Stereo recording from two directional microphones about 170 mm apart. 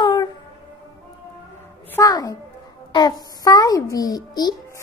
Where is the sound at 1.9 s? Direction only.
20° left (ahead or behind).